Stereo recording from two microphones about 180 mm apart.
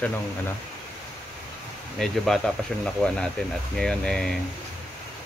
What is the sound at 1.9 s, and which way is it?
Speech, centre (ahead or behind).